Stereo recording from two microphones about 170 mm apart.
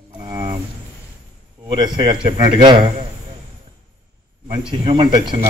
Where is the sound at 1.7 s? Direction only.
30° right (ahead or behind).